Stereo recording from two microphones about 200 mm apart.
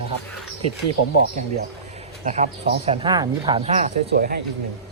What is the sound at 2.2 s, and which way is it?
Speech, 35° right (ahead or behind).